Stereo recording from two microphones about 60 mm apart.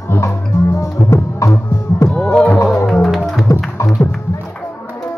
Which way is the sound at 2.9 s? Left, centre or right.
Centre.